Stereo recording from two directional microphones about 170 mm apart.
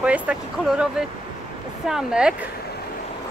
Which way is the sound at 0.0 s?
5° right (ahead or behind).